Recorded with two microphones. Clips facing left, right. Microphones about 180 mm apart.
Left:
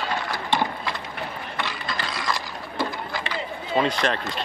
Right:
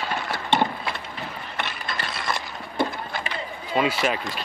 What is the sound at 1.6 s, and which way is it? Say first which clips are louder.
Mechanisms: left 1 dB; 60° right (ahead or behind).